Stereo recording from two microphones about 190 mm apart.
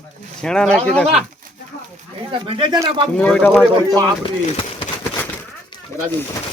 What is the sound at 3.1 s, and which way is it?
Speech, 5° left (ahead or behind).